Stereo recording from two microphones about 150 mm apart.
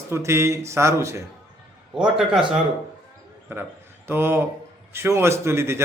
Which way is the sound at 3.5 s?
15° right (ahead or behind).